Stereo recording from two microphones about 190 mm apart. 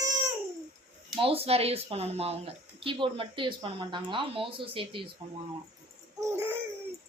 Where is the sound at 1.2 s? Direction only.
30° right (ahead or behind).